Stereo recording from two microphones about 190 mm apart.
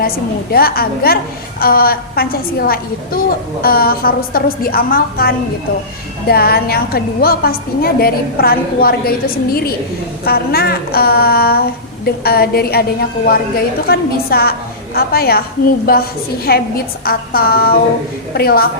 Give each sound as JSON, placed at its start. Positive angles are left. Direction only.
{"t": 0.5, "sound": "a woman's voice", "side_deg": 50}